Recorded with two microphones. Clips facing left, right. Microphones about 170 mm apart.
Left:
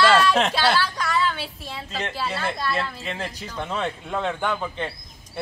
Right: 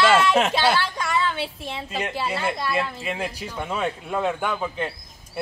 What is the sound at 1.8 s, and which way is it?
A man's voice, 10° right (ahead or behind).